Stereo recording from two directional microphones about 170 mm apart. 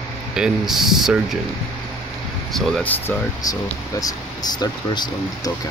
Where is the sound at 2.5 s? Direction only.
5° left (ahead or behind).